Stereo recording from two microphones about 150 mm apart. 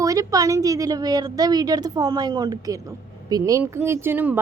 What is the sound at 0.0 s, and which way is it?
Speech, 20° right (ahead or behind).